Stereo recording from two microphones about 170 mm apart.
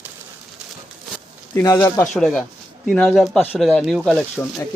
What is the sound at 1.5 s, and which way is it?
Speech, 15° left (ahead or behind).